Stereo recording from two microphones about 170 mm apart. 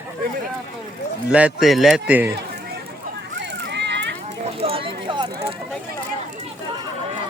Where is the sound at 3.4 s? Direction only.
85° right.